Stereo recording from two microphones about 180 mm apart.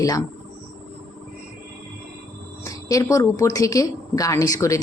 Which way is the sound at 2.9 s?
20° left (ahead or behind).